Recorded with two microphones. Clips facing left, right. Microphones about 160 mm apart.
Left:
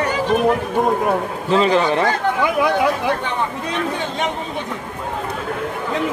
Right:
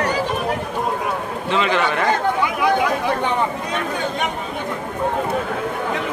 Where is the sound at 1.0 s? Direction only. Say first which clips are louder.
Left 4 dB; 35° left (ahead or behind).